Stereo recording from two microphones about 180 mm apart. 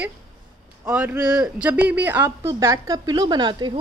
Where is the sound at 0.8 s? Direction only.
10° right (ahead or behind).